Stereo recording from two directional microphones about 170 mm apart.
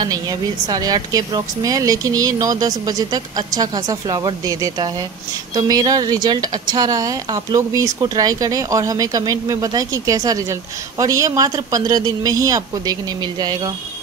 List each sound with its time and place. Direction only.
0.7 s speech: 20° right (ahead or behind)